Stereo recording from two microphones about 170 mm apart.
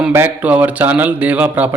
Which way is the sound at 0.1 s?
10° right (ahead or behind).